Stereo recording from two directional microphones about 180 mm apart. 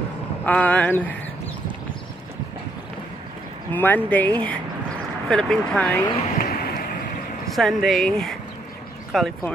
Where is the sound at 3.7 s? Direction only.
10° left (ahead or behind).